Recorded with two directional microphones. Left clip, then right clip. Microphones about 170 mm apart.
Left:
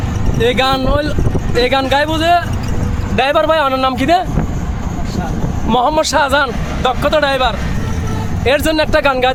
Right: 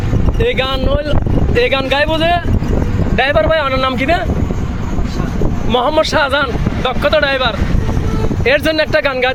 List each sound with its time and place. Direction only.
0.5 s speech: 15° left (ahead or behind)
5.7 s speech: 20° left (ahead or behind)